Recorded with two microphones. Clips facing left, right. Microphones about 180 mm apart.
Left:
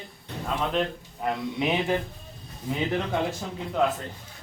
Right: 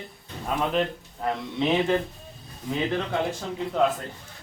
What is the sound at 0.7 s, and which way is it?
Speech, centre (ahead or behind).